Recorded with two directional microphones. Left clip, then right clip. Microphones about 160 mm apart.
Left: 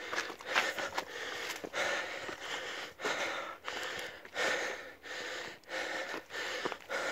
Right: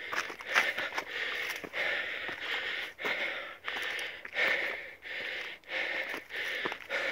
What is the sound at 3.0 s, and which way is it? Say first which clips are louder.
Gasp: right 1 dB; 45° left (ahead or behind).